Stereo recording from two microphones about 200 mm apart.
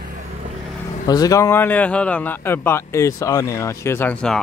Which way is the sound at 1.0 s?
20° left (ahead or behind).